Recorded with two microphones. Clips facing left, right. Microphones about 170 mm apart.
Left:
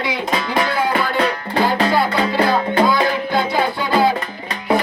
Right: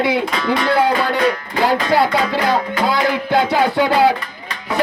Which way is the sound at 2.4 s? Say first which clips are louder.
Left 2 dB; 30° left (ahead or behind).